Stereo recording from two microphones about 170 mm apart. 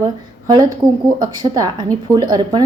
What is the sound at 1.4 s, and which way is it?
A woman's voice, 25° right (ahead or behind).